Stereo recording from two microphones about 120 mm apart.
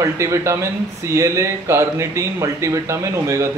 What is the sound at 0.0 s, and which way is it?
A man's voice, 25° right (ahead or behind).